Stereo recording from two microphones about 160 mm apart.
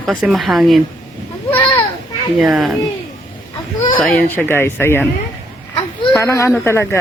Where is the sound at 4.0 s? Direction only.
Centre (ahead or behind).